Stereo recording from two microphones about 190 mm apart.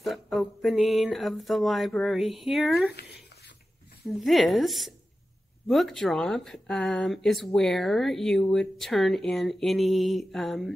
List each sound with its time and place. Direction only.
0.0 s speech: centre (ahead or behind)
4.2 s speech: centre (ahead or behind)